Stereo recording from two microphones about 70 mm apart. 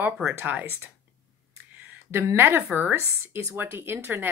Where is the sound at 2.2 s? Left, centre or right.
Right.